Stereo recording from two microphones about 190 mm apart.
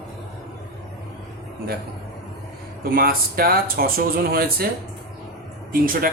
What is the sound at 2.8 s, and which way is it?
Speech, 50° right (ahead or behind).